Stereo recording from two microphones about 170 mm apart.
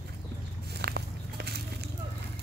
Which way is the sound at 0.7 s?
75° right (ahead or behind).